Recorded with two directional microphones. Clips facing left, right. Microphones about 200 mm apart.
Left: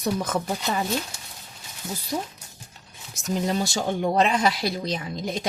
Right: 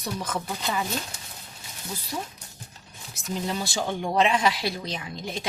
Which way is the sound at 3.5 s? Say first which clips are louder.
Left 4 dB; 40° left (ahead or behind).